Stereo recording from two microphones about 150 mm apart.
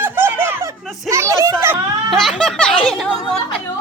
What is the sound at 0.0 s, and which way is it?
Giggle, 15° right (ahead or behind).